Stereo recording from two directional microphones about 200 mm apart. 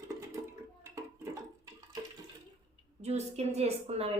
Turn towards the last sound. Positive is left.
turn(degrees=-30)  # may be behind; listen again after turning